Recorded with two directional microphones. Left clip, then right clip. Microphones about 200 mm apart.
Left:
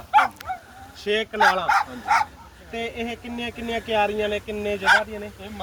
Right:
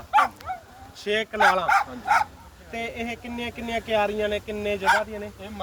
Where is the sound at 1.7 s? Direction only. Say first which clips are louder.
Left 1 dB; 35° right (ahead or behind).